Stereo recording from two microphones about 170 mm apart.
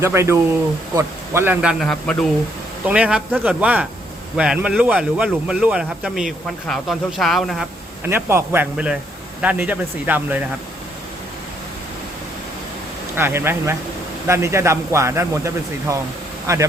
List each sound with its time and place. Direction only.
0.0 s speech: 15° right (ahead or behind)
1.8 s speech: 5° left (ahead or behind)
2.8 s speech: 5° right (ahead or behind)
8.0 s speech: 15° right (ahead or behind)
13.1 s speech: 15° right (ahead or behind)